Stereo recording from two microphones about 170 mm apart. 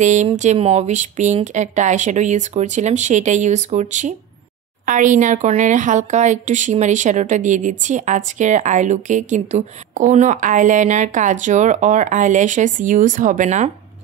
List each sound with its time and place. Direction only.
0.0 s a woman's voice: 45° right (ahead or behind)